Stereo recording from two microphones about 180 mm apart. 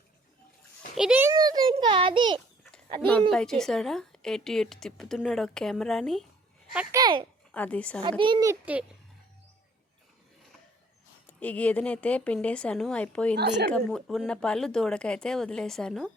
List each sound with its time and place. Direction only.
0.9 s a woman's voice: 5° right (ahead or behind)
1.3 s a child's voice: 20° right (ahead or behind)
3.1 s a woman's voice: 5° left (ahead or behind)
6.9 s a child's voice: 25° right (ahead or behind)
7.5 s speech: 10° left (ahead or behind)
8.2 s a child's voice: 25° right (ahead or behind)
11.3 s a woman's voice: 10° left (ahead or behind)